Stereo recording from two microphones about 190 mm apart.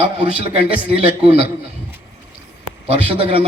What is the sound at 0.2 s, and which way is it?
Speech, 30° right (ahead or behind).